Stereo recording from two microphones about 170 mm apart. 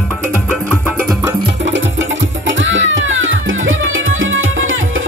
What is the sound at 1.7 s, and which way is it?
Music, 90° right.